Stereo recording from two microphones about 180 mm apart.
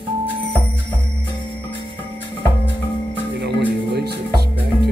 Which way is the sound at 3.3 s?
70° right (ahead or behind).